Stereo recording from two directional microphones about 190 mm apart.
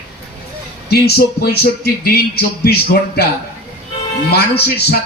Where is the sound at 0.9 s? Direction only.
55° left (ahead or behind).